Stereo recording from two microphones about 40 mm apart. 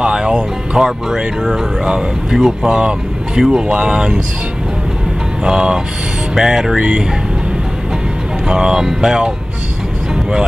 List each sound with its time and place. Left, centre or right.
0.0 s speech: right
5.4 s speech: centre
8.5 s speech: centre